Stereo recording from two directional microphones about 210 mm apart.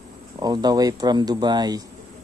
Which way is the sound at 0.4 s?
20° right (ahead or behind).